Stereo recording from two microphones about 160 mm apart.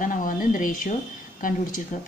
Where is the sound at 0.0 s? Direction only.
55° left (ahead or behind).